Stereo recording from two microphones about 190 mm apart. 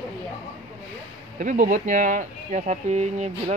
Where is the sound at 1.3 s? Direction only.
40° right (ahead or behind).